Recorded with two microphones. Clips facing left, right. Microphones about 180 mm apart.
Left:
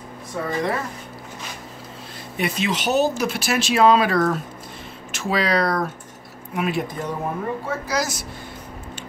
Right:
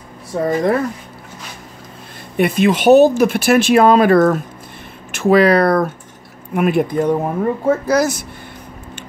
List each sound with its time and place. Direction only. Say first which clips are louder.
0.3 s speech: right 8 dB; 40° right (ahead or behind)
2.3 s speech: right 10 dB; 55° right (ahead or behind)